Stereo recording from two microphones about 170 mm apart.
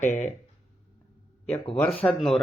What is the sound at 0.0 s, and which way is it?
Speech, 45° left (ahead or behind).